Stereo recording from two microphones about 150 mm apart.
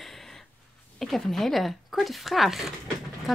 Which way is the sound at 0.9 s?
Centre (ahead or behind).